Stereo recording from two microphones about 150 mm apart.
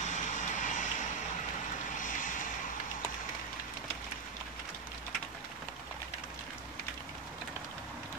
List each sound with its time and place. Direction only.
0.0 s vehicle: 55° left (ahead or behind)
2.0 s vehicle: 60° left (ahead or behind)